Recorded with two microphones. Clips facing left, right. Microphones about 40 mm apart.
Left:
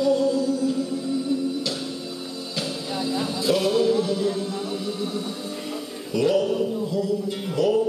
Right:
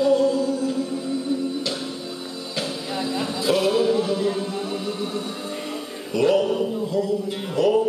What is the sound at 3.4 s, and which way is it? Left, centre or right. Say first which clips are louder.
Music: right 1 dB; centre.